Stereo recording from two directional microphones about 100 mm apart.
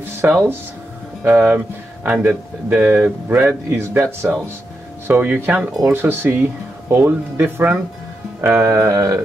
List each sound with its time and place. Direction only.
0.2 s speech: 20° right (ahead or behind)
5.7 s speech: 5° right (ahead or behind)
5.9 s speech: 20° right (ahead or behind)